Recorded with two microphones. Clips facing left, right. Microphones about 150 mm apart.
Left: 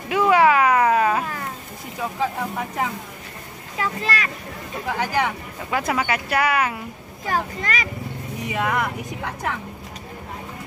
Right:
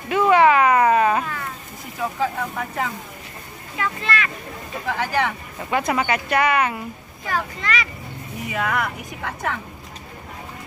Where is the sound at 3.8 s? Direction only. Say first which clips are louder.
Even; 35° left (ahead or behind).